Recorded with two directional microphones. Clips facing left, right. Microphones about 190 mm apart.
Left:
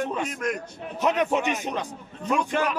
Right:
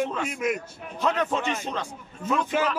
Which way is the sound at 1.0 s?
20° left (ahead or behind).